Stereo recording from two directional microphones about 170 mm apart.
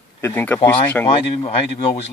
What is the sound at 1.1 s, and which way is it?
Speech, 40° left (ahead or behind).